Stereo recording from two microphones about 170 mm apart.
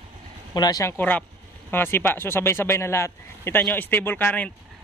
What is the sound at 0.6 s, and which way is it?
Speech, 20° left (ahead or behind).